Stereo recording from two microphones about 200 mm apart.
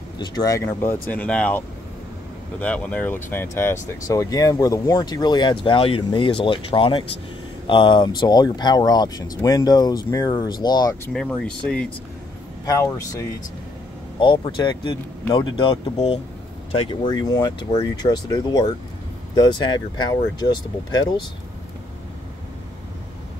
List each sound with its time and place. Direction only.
0.2 s speech: 20° left (ahead or behind)
2.6 s speech: 5° left (ahead or behind)
11.1 s speech: 5° left (ahead or behind)
12.6 s speech: 15° left (ahead or behind)